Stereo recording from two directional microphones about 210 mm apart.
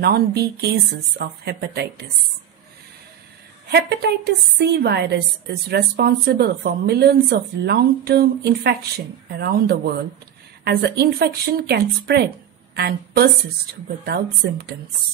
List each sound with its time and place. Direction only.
0.0 s a woman's voice: 50° right (ahead or behind)
3.7 s a woman's voice: 50° right (ahead or behind)